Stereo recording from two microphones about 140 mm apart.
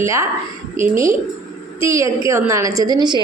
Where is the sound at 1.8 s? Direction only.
20° right (ahead or behind).